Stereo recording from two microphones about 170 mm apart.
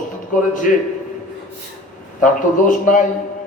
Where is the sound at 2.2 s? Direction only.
50° left (ahead or behind).